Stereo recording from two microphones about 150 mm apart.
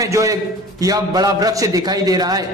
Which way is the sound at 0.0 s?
20° right (ahead or behind).